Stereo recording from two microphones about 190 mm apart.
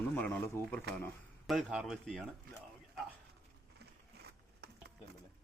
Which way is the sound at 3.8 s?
60° right (ahead or behind).